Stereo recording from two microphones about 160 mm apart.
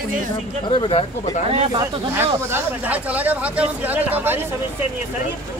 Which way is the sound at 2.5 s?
10° right (ahead or behind).